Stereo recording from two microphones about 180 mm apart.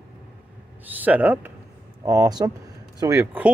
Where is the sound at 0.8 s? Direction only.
10° right (ahead or behind).